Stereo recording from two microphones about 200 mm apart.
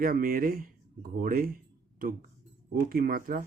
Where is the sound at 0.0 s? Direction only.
45° right (ahead or behind).